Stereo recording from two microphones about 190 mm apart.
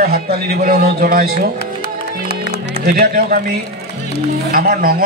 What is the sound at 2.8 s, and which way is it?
Speech, 50° right (ahead or behind).